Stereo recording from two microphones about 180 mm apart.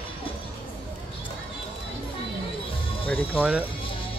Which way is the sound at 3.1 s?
10° left (ahead or behind).